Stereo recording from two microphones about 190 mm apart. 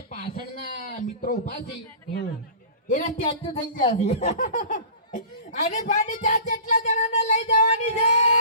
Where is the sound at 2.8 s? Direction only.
45° left (ahead or behind).